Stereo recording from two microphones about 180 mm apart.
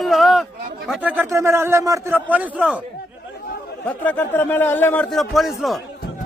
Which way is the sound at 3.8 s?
10° left (ahead or behind).